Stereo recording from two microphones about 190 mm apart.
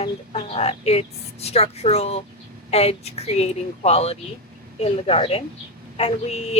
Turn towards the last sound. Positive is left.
turn(degrees=35)  # may be behind; listen again after turning